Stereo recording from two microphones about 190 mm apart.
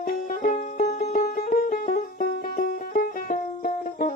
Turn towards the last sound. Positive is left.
turn(degrees=45)  # may be behind; listen again after turning